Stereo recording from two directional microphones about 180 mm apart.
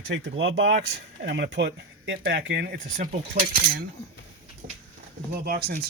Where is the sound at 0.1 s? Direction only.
90° right; by 2.7 s 70° right (ahead or behind).